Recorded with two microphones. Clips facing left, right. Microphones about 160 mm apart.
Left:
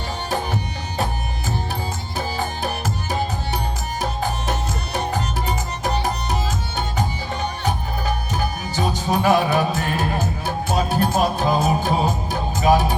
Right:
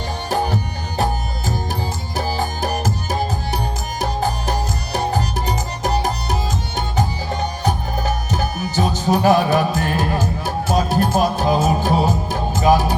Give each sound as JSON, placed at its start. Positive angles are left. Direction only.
{"t": 0.3, "sound": "music", "side_deg": -40}
{"t": 2.1, "sound": "music", "side_deg": -40}
{"t": 5.1, "sound": "music", "side_deg": -40}
{"t": 7.6, "sound": "music", "side_deg": -40}